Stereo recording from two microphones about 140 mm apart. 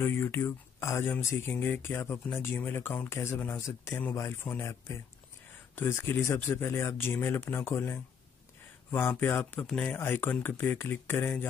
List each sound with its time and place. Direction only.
0.0 s speech: 15° left (ahead or behind)